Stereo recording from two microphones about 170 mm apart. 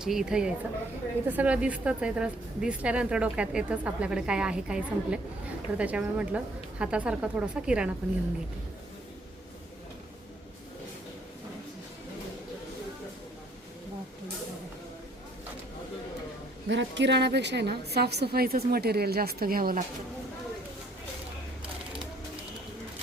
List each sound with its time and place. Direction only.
0.0 s a woman's voice: 5° right (ahead or behind)
16.6 s a woman's voice: 90° right; by 19.8 s 60° right (ahead or behind)